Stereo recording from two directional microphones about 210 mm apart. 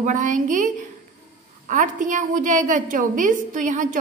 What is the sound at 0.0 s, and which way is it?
Speech, 40° right (ahead or behind).